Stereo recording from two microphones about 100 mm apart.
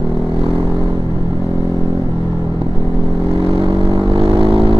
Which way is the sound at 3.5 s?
55° right (ahead or behind).